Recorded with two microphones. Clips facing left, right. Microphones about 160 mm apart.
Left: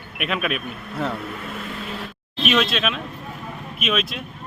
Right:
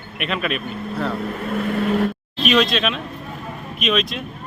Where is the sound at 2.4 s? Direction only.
5° left (ahead or behind).